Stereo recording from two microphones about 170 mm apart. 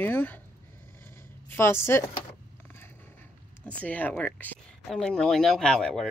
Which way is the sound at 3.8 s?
10° left (ahead or behind).